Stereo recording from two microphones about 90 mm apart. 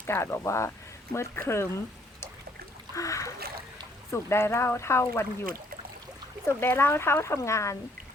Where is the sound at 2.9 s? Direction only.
35° left (ahead or behind).